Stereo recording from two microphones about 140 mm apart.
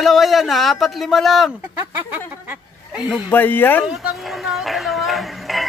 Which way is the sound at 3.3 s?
15° left (ahead or behind).